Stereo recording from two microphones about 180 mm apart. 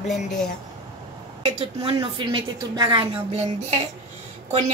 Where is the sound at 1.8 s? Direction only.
30° right (ahead or behind).